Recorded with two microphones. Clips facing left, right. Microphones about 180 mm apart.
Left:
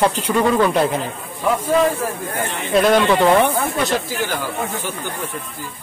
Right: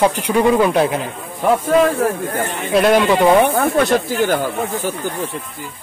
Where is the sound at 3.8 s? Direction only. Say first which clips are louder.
Right 5 dB; 55° right (ahead or behind).